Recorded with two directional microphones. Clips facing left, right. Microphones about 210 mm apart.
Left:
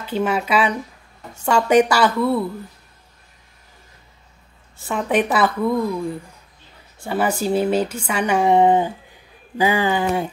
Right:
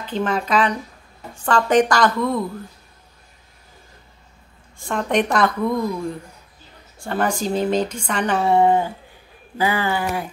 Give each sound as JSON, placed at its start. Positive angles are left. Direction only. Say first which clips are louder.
{"t": 0.0, "sound": "speech", "louder": "left 1 dB", "side_deg": 10}
{"t": 4.7, "sound": "speech", "louder": "left 1 dB", "side_deg": 5}